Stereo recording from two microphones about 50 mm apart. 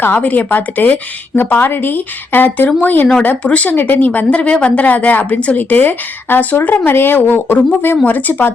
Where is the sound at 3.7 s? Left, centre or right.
Left.